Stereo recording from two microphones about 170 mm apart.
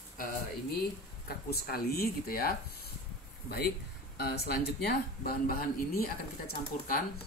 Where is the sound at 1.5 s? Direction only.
65° left (ahead or behind).